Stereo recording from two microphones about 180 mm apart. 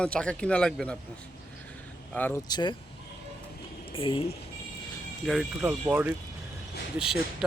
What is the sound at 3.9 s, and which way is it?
Speech, 30° left (ahead or behind).